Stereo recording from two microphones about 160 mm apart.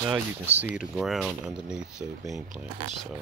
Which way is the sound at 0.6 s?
5° right (ahead or behind).